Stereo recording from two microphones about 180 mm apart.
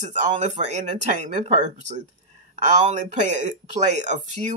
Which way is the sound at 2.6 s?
40° right (ahead or behind).